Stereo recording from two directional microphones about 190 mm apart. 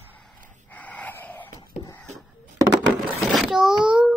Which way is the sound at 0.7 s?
10° left (ahead or behind).